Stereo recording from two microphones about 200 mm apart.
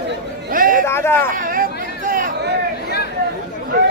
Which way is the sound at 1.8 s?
45° right (ahead or behind).